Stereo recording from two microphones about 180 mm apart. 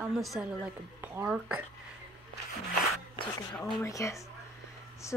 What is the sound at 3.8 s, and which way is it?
Speech, 15° left (ahead or behind).